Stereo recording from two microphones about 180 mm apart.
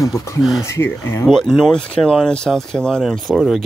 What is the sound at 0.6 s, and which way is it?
Speech, 15° left (ahead or behind).